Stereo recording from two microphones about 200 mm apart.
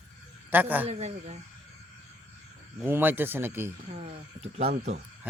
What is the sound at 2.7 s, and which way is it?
Speech, 10° right (ahead or behind).